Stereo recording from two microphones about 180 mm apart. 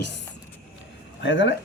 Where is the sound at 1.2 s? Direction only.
90° left.